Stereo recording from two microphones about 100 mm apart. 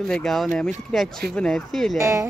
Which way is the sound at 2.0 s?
30° right (ahead or behind).